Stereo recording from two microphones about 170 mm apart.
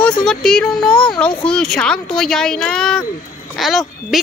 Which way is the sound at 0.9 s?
30° left (ahead or behind).